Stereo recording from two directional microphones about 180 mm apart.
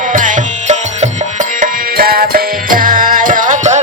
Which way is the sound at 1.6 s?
55° right (ahead or behind).